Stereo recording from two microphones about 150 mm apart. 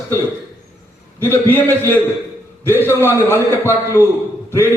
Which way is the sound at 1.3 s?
15° left (ahead or behind).